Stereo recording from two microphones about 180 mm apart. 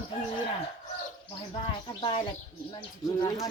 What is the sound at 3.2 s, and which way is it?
Speech, 20° left (ahead or behind).